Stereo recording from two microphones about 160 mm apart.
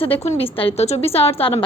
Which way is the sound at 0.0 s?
35° left (ahead or behind).